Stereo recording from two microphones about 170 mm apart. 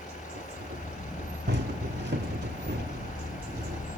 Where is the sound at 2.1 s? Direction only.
85° right.